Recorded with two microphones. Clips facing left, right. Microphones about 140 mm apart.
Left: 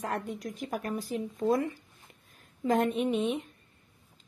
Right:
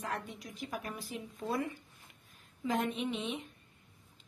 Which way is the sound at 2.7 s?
50° left (ahead or behind).